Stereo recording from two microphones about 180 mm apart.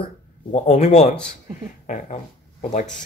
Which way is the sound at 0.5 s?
35° left (ahead or behind).